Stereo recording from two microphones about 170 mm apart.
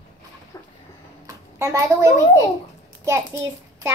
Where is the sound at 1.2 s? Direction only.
20° right (ahead or behind).